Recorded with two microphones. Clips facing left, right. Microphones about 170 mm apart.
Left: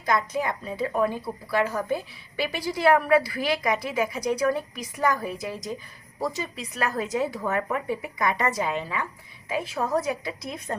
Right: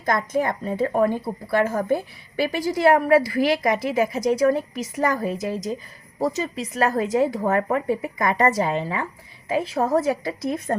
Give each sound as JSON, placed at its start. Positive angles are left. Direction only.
{"t": 0.0, "sound": "a woman's voice", "side_deg": -50}
{"t": 6.6, "sound": "a woman's voice", "side_deg": -40}
{"t": 8.6, "sound": "a woman's voice", "side_deg": -35}